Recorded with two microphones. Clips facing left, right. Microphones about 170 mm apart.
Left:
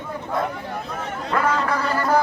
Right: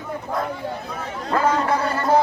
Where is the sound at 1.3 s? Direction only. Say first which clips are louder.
Right 2 dB; 30° right (ahead or behind).